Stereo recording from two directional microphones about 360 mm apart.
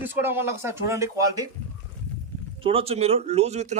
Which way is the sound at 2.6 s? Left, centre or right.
Centre.